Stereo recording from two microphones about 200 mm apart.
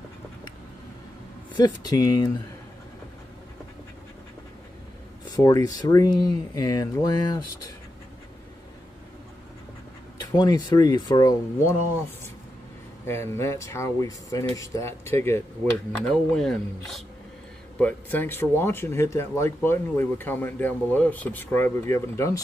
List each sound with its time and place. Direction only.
1.5 s speech: 20° left (ahead or behind)
5.3 s speech: 15° left (ahead or behind)
10.3 s speech: 20° left (ahead or behind)
13.0 s speech: 10° left (ahead or behind)